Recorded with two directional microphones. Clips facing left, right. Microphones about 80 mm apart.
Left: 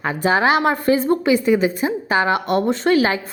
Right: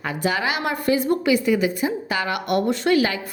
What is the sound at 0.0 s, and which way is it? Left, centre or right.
A woman's voice, left.